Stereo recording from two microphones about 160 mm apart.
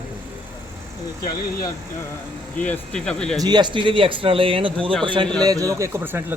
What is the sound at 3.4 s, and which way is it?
Speech, 25° right (ahead or behind).